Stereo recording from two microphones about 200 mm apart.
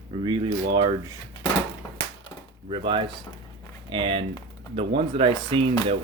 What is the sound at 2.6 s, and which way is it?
Speech, 25° right (ahead or behind).